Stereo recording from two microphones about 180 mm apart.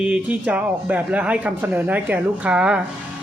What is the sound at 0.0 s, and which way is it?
Speech, 5° right (ahead or behind).